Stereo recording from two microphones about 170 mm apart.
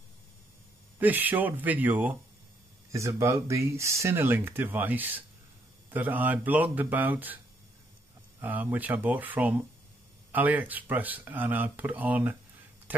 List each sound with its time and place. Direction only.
0.9 s speech: 10° right (ahead or behind)
8.4 s speech: 10° right (ahead or behind)